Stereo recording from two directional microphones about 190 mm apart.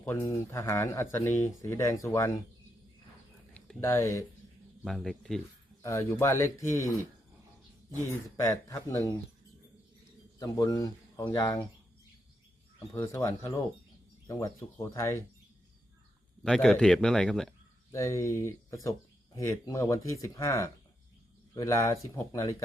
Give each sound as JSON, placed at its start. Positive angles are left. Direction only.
{"t": 0.0, "sound": "speech", "side_deg": 15}
{"t": 3.8, "sound": "speech", "side_deg": 15}
{"t": 4.8, "sound": "speech", "side_deg": 0}
{"t": 5.8, "sound": "speech", "side_deg": 15}
{"t": 8.4, "sound": "speech", "side_deg": 15}
{"t": 10.4, "sound": "speech", "side_deg": 20}
{"t": 12.9, "sound": "speech", "side_deg": 15}
{"t": 16.4, "sound": "speech", "side_deg": 5}
{"t": 17.9, "sound": "speech", "side_deg": 15}